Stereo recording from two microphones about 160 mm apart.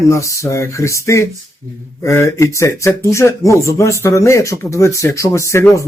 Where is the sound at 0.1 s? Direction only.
20° left (ahead or behind).